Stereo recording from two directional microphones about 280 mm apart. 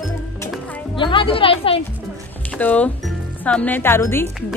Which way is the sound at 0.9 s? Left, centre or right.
Centre.